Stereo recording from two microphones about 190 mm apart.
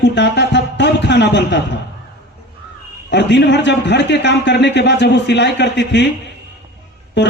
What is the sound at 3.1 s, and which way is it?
A man's voice, 65° left (ahead or behind).